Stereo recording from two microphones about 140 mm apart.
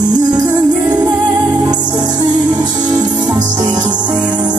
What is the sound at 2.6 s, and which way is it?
Music, 30° right (ahead or behind).